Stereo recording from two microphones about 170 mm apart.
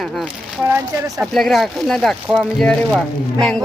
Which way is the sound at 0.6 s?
15° right (ahead or behind).